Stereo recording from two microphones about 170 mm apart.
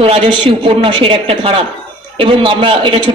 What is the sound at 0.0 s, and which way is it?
A woman's voice, 30° right (ahead or behind).